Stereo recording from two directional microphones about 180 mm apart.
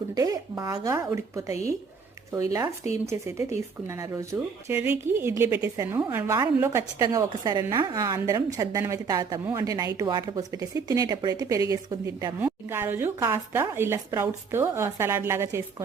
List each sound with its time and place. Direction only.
0.1 s a woman's voice: 20° right (ahead or behind)